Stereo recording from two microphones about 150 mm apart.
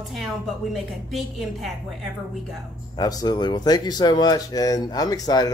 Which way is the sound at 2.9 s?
25° left (ahead or behind).